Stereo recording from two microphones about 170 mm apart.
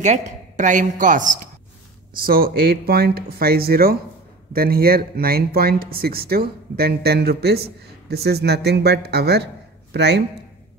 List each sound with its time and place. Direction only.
0.0 s a woman's voice: 45° right (ahead or behind); by 10.2 s 80° right